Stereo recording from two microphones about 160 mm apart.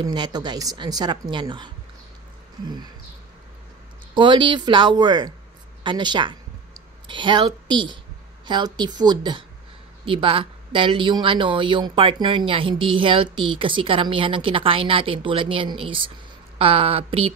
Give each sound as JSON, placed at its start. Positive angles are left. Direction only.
{"t": 0.0, "sound": "a woman's voice", "side_deg": -25}
{"t": 4.1, "sound": "a woman's voice", "side_deg": -30}